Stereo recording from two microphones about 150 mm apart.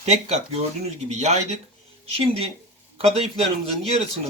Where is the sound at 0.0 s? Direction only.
45° right (ahead or behind).